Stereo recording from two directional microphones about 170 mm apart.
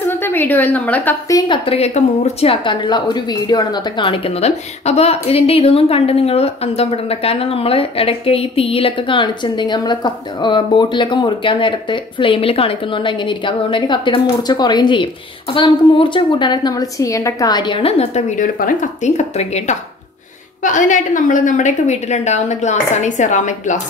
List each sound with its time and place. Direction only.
0.1 s a woman's voice: 10° left (ahead or behind)
1.3 s a woman's voice: 30° left (ahead or behind)